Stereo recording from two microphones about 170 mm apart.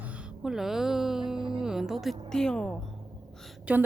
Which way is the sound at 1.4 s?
30° right (ahead or behind).